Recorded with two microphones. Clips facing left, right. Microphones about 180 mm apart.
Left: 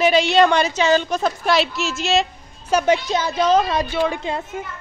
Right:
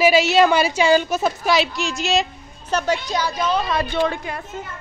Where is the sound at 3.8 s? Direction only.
10° left (ahead or behind).